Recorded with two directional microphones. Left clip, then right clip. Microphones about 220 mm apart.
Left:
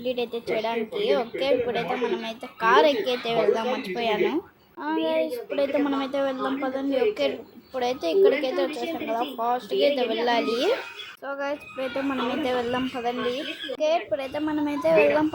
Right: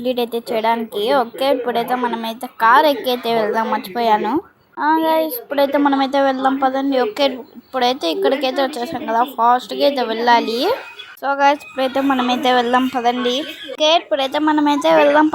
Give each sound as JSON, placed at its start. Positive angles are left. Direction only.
{"t": 0.0, "sound": "a woman's voice", "side_deg": -25}